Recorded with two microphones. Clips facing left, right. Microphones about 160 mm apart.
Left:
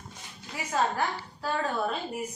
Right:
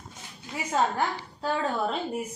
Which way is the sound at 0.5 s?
25° right (ahead or behind).